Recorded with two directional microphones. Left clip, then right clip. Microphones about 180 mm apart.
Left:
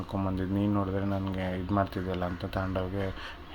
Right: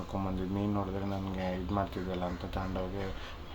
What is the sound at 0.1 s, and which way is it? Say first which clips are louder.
Speech: left 4 dB; 25° left (ahead or behind).